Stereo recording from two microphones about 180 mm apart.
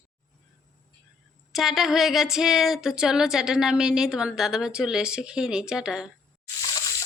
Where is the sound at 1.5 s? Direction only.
Centre (ahead or behind).